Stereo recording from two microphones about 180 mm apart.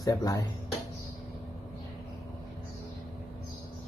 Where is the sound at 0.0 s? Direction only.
20° left (ahead or behind).